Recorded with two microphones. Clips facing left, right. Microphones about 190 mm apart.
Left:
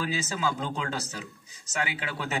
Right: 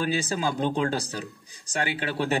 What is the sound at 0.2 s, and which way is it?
A man's voice, 35° right (ahead or behind).